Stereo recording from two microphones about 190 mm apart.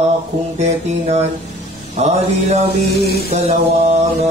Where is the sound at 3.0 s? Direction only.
55° left (ahead or behind).